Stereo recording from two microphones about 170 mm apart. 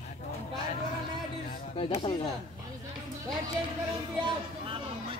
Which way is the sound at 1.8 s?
35° left (ahead or behind).